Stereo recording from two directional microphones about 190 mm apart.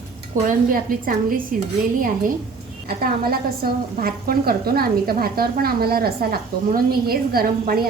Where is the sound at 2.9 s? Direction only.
50° right (ahead or behind).